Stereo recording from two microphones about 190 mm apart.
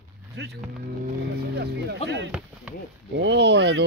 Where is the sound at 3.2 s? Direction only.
65° right (ahead or behind).